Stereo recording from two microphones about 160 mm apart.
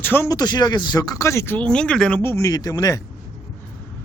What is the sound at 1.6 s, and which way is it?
Speech, 5° left (ahead or behind).